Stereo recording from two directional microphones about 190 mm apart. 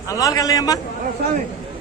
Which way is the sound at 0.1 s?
20° left (ahead or behind).